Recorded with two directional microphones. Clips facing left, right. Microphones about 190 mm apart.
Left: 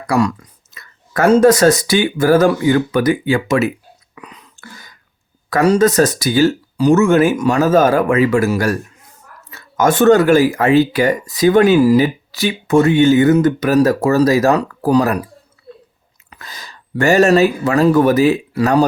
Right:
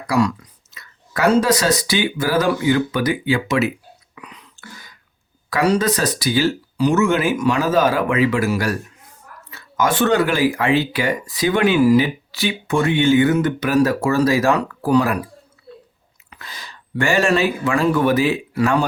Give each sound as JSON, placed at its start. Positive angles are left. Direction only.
{"t": 0.1, "sound": "speech", "side_deg": 50}
{"t": 4.1, "sound": "whispering", "side_deg": 40}
{"t": 5.5, "sound": "speech", "side_deg": 45}
{"t": 16.3, "sound": "speech", "side_deg": 45}